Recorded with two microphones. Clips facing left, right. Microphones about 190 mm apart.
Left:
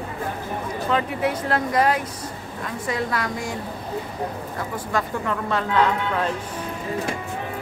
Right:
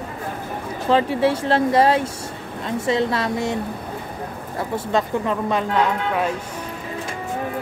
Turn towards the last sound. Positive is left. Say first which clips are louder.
# right 1 dB
turn(degrees=-15)  # may be behind; listen again after turning